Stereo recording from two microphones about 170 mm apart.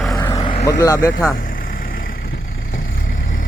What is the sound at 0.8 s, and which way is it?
Speech, 20° left (ahead or behind).